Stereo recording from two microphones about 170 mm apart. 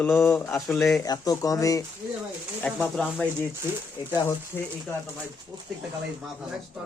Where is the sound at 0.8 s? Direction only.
Centre (ahead or behind).